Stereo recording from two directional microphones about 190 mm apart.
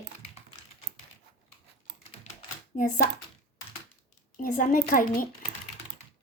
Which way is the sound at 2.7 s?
45° left (ahead or behind).